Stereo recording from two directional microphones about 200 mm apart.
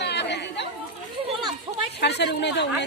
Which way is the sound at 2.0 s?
55° left (ahead or behind).